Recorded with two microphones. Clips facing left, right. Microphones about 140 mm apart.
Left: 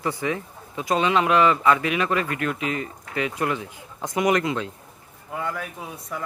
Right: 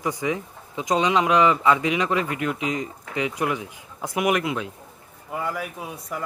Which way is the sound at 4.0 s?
5° right (ahead or behind).